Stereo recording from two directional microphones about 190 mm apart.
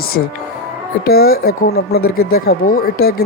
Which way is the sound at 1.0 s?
55° left (ahead or behind).